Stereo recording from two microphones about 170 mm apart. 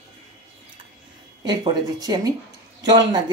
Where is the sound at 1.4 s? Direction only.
25° right (ahead or behind).